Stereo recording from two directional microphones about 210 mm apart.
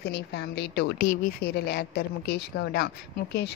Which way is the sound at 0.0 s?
50° left (ahead or behind).